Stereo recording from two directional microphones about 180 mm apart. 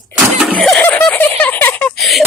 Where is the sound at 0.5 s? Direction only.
5° left (ahead or behind).